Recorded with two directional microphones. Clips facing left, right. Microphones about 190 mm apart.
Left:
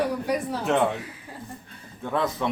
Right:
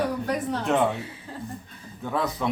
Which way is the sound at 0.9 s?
30° right (ahead or behind).